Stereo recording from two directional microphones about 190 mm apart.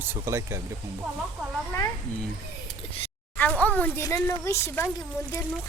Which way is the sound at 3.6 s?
10° left (ahead or behind).